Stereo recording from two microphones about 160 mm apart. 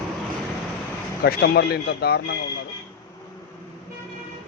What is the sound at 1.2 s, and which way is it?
Speech, 80° left.